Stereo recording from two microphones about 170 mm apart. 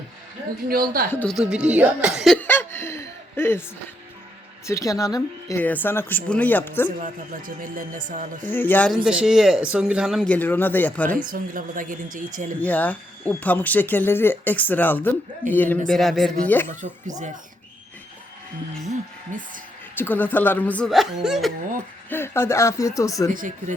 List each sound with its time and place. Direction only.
1.1 s speech: 10° left (ahead or behind)
1.4 s speech: 5° right (ahead or behind)
2.4 s chuckle: 10° left (ahead or behind)
4.6 s speech: 20° left (ahead or behind)
7.0 s a woman's voice: 55° right (ahead or behind)
8.4 s speech: 10° left (ahead or behind)
9.0 s speech: 5° right (ahead or behind)
11.3 s a woman's voice: 50° right (ahead or behind)
12.6 s speech: 10° left (ahead or behind)
16.6 s speech: 10° left (ahead or behind)
19.3 s a woman's voice: 50° right (ahead or behind)
20.0 s speech: 10° left (ahead or behind)
22.1 s speech: 15° left (ahead or behind)
23.3 s a woman's voice: 50° right (ahead or behind)